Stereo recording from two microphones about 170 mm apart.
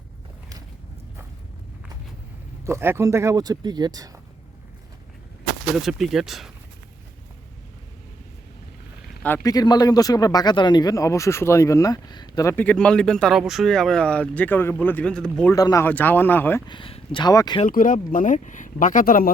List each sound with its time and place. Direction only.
2.6 s speech: 15° right (ahead or behind)
5.7 s speech: centre (ahead or behind)
9.2 s speech: 15° left (ahead or behind)
12.5 s speech: 5° left (ahead or behind)
15.5 s speech: 20° left (ahead or behind)
16.6 s speech: 30° left (ahead or behind)
17.7 s speech: 50° left (ahead or behind)